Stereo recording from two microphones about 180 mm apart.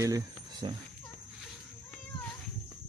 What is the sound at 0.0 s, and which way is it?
Speech, 20° right (ahead or behind).